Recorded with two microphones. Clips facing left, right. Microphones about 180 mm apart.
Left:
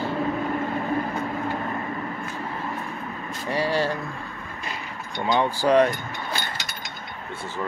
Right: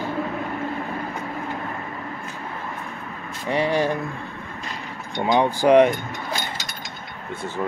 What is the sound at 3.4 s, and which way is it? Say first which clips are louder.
Speech: right 3 dB; 20° right (ahead or behind).